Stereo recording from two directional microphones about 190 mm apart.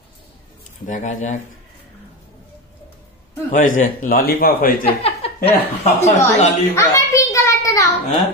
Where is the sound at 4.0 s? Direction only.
50° left (ahead or behind).